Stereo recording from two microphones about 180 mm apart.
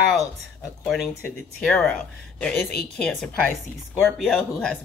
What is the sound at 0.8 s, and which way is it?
Speech, centre (ahead or behind).